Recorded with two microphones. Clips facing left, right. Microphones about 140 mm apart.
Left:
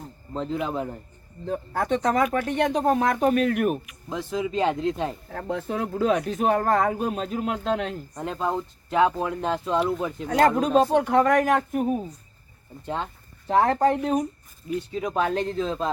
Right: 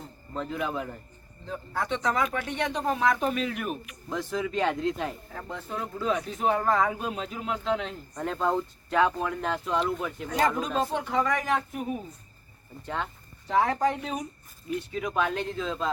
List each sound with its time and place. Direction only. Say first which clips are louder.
0.3 s speech: left 4 dB; 25° left (ahead or behind)
1.5 s speech: left 6 dB; 50° left (ahead or behind)
4.1 s speech: left 2 dB; 15° left (ahead or behind)
5.3 s speech: left 7 dB; 60° left (ahead or behind)
8.1 s speech: right 2 dB; 15° left (ahead or behind)
10.2 s speech: left 7 dB; 60° left (ahead or behind)
12.8 s speech: left 3 dB; 25° left (ahead or behind)
13.5 s speech: left 5 dB; 45° left (ahead or behind)
14.8 s speech: left 3 dB; 30° left (ahead or behind)